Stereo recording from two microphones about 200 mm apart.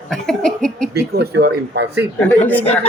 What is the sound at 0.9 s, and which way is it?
Speech, 55° right (ahead or behind).